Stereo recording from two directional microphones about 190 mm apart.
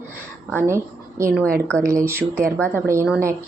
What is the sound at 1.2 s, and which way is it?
Speech, 15° right (ahead or behind).